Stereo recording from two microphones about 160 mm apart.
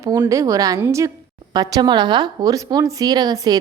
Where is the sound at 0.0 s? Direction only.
20° right (ahead or behind).